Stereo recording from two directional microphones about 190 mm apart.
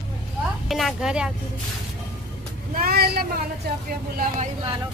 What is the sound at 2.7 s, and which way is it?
Vehicle, 50° right (ahead or behind).